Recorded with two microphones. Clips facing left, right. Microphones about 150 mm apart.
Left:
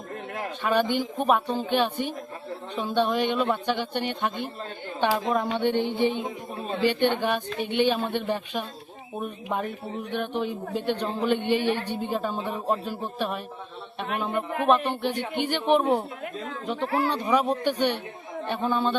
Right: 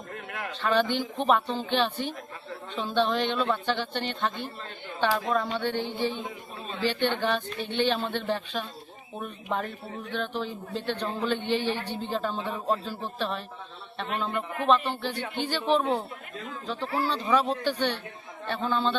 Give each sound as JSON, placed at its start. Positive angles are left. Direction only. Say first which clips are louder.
{"t": 0.6, "sound": "speech", "louder": "left 1 dB", "side_deg": 10}
{"t": 16.8, "sound": "speech", "louder": "left 4 dB", "side_deg": 60}
{"t": 17.1, "sound": "speech", "louder": "right 1 dB", "side_deg": 15}